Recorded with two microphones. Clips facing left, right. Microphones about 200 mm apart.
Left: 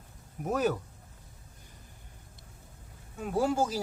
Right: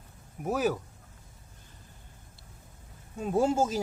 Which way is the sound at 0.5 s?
5° right (ahead or behind).